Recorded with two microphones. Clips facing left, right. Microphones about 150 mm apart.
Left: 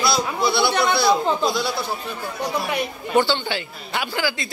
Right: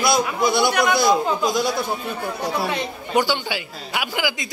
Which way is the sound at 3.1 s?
10° right (ahead or behind).